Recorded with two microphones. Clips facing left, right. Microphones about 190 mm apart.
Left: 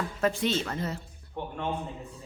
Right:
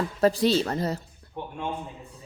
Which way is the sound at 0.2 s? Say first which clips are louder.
Right 6 dB; 35° right (ahead or behind).